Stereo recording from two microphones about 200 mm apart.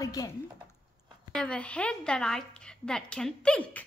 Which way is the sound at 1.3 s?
5° left (ahead or behind).